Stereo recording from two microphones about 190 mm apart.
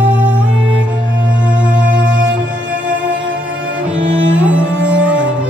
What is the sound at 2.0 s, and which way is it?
Music, 80° right.